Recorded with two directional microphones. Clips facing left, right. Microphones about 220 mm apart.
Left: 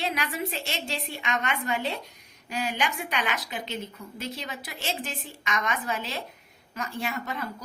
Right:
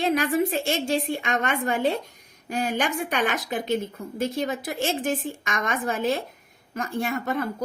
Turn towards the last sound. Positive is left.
turn(degrees=-50)  # may be behind; listen again after turning